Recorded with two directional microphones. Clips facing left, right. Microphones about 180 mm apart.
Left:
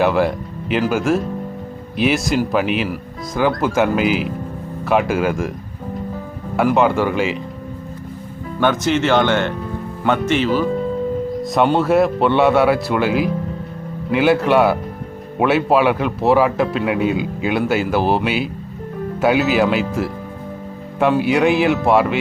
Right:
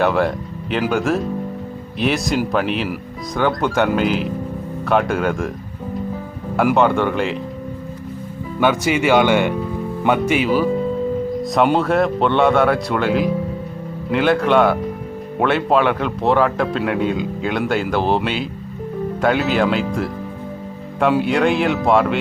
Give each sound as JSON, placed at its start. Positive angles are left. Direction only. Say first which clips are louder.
{"t": 0.0, "sound": "speech", "louder": "left 1 dB", "side_deg": 0}
{"t": 6.7, "sound": "speech", "louder": "left 1 dB", "side_deg": 0}
{"t": 8.6, "sound": "speech", "louder": "even", "side_deg": -10}
{"t": 11.5, "sound": "a man's voice", "louder": "left 2 dB", "side_deg": 0}
{"t": 19.2, "sound": "speech", "louder": "left 2 dB", "side_deg": 5}